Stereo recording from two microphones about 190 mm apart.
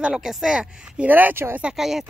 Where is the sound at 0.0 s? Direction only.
Centre (ahead or behind).